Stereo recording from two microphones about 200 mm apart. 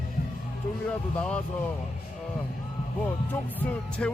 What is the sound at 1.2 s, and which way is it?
Speech, 5° left (ahead or behind).